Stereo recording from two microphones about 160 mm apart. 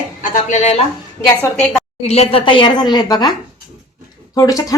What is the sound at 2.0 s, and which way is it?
A woman's voice, 40° left (ahead or behind).